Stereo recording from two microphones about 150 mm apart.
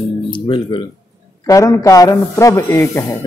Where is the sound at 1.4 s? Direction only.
20° left (ahead or behind).